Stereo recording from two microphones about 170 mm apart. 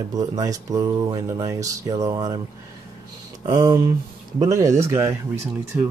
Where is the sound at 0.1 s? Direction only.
20° right (ahead or behind).